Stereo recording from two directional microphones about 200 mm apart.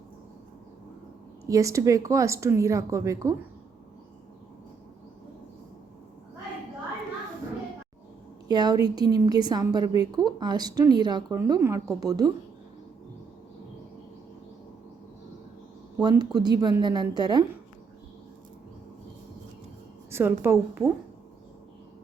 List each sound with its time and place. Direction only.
1.5 s a woman's voice: 15° right (ahead or behind)
8.4 s a woman's voice: 20° right (ahead or behind)
16.0 s a woman's voice: 20° right (ahead or behind)
20.1 s a woman's voice: 10° right (ahead or behind)